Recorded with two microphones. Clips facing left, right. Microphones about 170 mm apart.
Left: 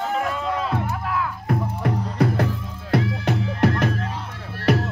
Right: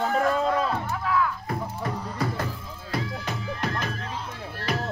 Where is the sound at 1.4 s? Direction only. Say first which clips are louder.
Left 6 dB; 65° left (ahead or behind).